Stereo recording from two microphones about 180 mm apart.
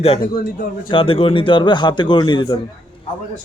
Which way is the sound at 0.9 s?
30° left (ahead or behind).